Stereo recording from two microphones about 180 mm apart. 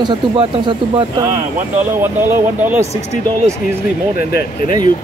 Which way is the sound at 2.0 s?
10° right (ahead or behind).